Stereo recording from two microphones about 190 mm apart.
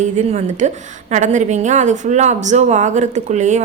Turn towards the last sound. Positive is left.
turn(degrees=-40)  # may be behind; listen again after turning